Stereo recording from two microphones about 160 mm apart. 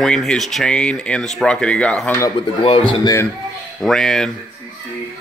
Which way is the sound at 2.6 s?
30° left (ahead or behind).